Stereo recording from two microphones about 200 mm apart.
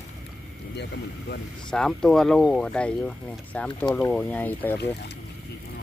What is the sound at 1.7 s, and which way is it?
Speech, 5° left (ahead or behind).